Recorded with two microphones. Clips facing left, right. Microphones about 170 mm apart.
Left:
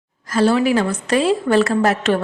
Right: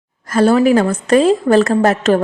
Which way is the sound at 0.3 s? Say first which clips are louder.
Right 4 dB; 50° right (ahead or behind).